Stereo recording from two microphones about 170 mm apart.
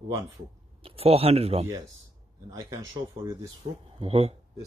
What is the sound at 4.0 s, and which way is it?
Speech, 35° right (ahead or behind).